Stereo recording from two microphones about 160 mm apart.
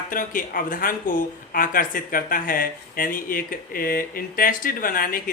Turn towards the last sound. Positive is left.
turn(degrees=60)  # may be behind; listen again after turning